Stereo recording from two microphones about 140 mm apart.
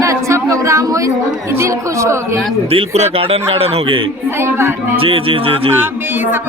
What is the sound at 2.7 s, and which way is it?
Speech, 45° right (ahead or behind).